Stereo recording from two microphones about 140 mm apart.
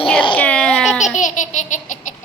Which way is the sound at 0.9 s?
60° left (ahead or behind).